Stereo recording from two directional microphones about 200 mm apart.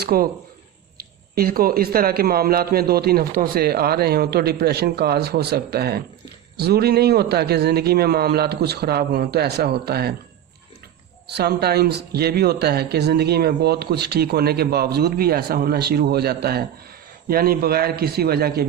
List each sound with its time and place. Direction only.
0.0 s speech: 50° right (ahead or behind)
11.3 s speech: 55° right (ahead or behind)